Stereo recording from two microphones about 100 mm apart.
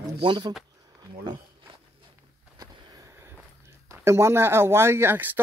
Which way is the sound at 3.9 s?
25° right (ahead or behind).